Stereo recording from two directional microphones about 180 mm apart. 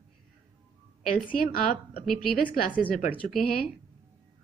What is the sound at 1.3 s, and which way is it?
Speech, 50° left (ahead or behind).